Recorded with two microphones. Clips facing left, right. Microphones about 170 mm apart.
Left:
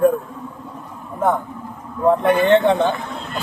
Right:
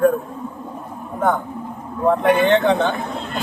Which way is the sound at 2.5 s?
Centre (ahead or behind).